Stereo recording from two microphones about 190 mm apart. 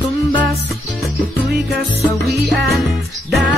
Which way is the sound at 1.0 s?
Centre (ahead or behind).